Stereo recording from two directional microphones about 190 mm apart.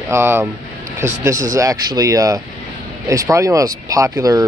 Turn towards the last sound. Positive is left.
turn(degrees=-15)  # may be behind; listen again after turning